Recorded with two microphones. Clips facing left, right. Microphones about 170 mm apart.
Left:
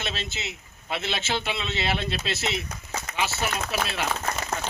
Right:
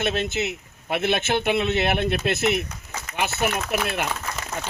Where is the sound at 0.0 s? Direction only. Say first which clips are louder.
Right 9 dB; 55° right (ahead or behind).